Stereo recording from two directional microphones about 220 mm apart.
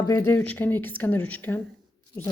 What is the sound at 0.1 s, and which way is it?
Speech, 10° left (ahead or behind).